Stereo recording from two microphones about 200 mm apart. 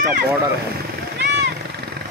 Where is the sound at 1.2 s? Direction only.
60° right (ahead or behind).